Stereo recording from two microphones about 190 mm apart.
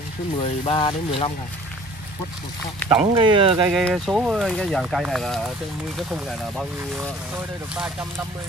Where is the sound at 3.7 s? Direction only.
Centre (ahead or behind).